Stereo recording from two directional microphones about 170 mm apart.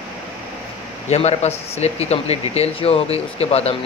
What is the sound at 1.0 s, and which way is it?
Speech, 40° left (ahead or behind).